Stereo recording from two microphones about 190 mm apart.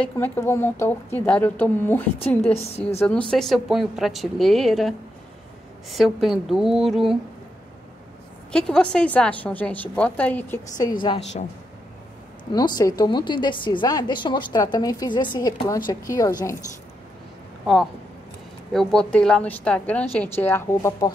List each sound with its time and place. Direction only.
0.0 s a woman's voice: 10° left (ahead or behind)
2.5 s a woman's voice: 35° left (ahead or behind)
3.0 s a woman's voice: 5° left (ahead or behind)
8.5 s a woman's voice: 5° left (ahead or behind)
10.8 s a woman's voice: 25° left (ahead or behind)
12.5 s a woman's voice: 20° left (ahead or behind)
18.7 s a woman's voice: centre (ahead or behind)